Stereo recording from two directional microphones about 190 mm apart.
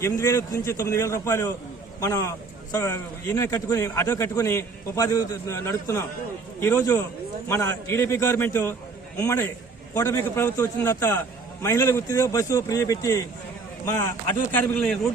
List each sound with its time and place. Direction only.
0.0 s a man's voice: 15° left (ahead or behind)